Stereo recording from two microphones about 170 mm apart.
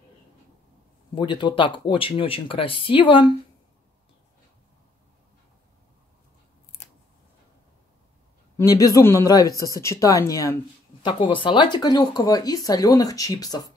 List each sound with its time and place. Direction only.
1.1 s speech: 25° left (ahead or behind)
8.5 s speech: 20° left (ahead or behind)
11.1 s speech: 30° left (ahead or behind)